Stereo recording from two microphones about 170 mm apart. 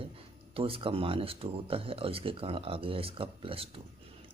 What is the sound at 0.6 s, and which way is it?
Speech, 35° right (ahead or behind).